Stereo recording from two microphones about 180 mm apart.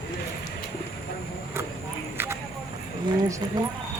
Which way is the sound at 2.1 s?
15° right (ahead or behind).